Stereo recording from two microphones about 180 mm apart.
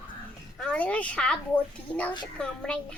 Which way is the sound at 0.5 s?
5° left (ahead or behind).